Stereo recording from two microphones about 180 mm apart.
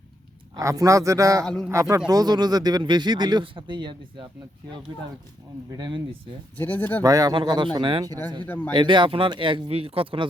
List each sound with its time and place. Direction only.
0.5 s a man's voice: 20° right (ahead or behind)
1.5 s a man's voice: 5° left (ahead or behind)
1.7 s a man's voice: 15° right (ahead or behind)
5.7 s speech: 25° right (ahead or behind)
6.6 s speech: 10° left (ahead or behind)
7.0 s speech: 20° right (ahead or behind)
8.4 s speech: 10° left (ahead or behind)
8.7 s speech: 25° right (ahead or behind)